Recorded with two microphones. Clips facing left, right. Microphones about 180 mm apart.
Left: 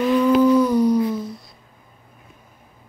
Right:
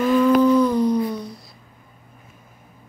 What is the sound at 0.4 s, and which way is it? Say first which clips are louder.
Humming: left 1 dB; 10° left (ahead or behind).